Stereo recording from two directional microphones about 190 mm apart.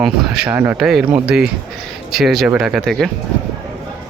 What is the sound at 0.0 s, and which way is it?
Speech, 5° right (ahead or behind).